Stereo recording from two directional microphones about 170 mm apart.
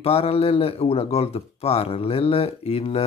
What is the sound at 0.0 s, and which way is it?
Speech, 35° left (ahead or behind).